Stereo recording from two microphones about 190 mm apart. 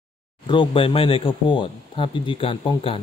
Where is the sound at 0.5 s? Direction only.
25° left (ahead or behind).